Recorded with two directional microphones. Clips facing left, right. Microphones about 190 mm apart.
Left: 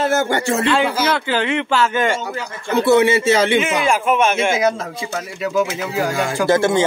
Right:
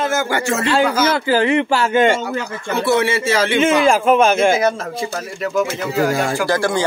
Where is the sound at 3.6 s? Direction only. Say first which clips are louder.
Right 4 dB; 30° right (ahead or behind).